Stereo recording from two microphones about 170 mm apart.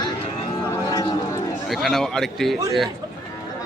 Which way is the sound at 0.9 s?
20° left (ahead or behind).